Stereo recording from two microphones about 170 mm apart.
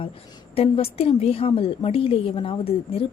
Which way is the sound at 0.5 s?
35° left (ahead or behind).